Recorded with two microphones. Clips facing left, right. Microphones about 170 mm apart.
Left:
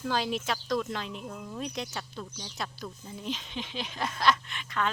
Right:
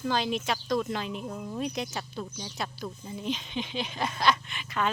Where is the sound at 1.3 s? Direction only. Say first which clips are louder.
Right 4 dB; 20° right (ahead or behind).